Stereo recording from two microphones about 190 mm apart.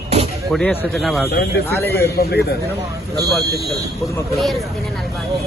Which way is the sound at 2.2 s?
55° left (ahead or behind).